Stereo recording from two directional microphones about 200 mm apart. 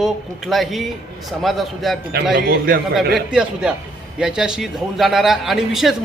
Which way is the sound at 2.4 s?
45° right (ahead or behind).